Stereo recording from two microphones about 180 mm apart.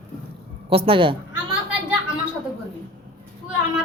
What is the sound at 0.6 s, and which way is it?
Speech, 30° right (ahead or behind).